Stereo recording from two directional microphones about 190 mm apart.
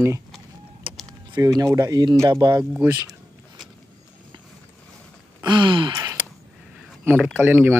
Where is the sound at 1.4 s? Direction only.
15° right (ahead or behind).